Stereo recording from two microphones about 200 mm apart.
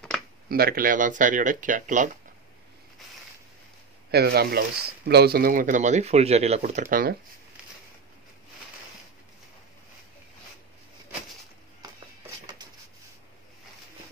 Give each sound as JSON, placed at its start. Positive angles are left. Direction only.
{"t": 0.5, "sound": "speech", "side_deg": -50}
{"t": 4.1, "sound": "speech", "side_deg": -55}